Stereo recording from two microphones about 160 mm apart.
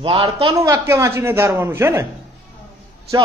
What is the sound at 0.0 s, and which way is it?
Speech, 30° right (ahead or behind).